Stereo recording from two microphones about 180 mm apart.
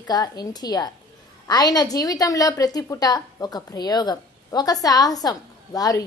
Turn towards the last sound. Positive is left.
turn(degrees=20)  # may be behind; listen again after turning